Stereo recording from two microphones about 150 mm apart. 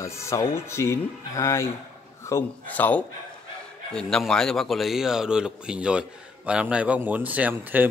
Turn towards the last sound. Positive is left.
turn(degrees=-10)  # may be behind; listen again after turning